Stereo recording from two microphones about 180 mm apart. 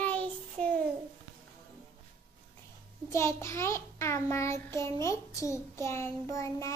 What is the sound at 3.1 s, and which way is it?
Child singing, 15° left (ahead or behind).